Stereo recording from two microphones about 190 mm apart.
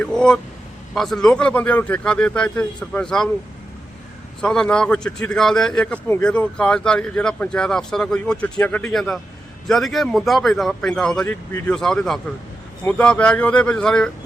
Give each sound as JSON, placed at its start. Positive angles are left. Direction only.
{"t": 0.0, "sound": "a man's voice", "side_deg": 5}
{"t": 4.4, "sound": "a man's voice", "side_deg": 5}